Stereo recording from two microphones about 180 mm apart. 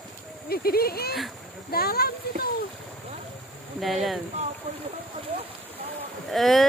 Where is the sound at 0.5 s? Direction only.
60° left (ahead or behind).